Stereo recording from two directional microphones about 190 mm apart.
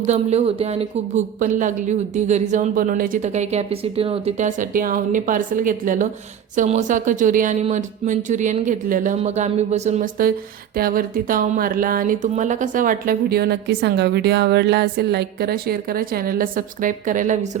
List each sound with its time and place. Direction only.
0.1 s speech: 35° right (ahead or behind)